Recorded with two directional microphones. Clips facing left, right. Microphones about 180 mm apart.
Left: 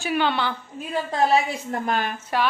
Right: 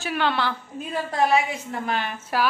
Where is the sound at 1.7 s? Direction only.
45° left (ahead or behind).